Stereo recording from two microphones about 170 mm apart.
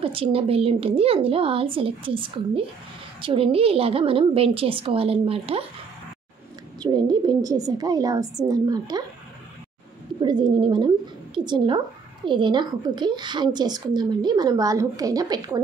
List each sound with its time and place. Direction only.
0.0 s speech: 35° right (ahead or behind)
6.8 s a woman's voice: 25° right (ahead or behind)
10.2 s a woman's voice: 25° right (ahead or behind)